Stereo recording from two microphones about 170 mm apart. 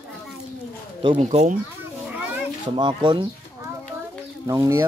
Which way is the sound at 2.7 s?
25° right (ahead or behind).